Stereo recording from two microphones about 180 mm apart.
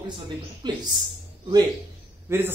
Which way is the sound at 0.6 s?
25° right (ahead or behind).